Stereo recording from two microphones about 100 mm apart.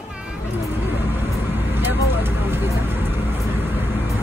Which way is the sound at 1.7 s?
20° right (ahead or behind).